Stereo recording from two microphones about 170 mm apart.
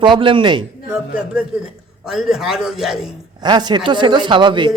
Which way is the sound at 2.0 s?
Centre (ahead or behind).